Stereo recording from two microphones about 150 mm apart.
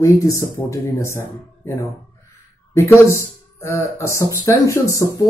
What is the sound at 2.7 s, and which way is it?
Speech, 20° left (ahead or behind).